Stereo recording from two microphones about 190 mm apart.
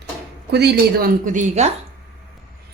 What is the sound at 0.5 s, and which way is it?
Speech, 60° right (ahead or behind).